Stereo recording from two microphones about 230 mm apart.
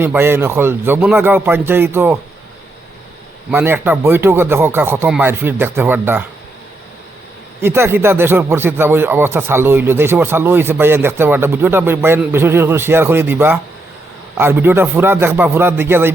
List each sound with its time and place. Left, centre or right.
0.0 s speech: centre
3.5 s speech: centre
7.6 s speech: centre